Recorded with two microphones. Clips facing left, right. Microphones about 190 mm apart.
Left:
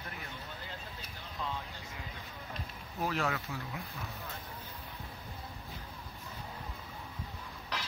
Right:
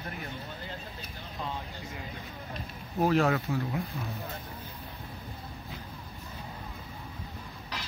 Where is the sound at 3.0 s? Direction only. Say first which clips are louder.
Right 9 dB; 40° right (ahead or behind).